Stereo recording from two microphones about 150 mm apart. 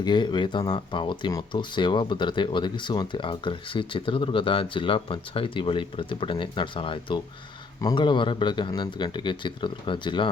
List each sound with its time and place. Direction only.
0.0 s speech: 30° left (ahead or behind)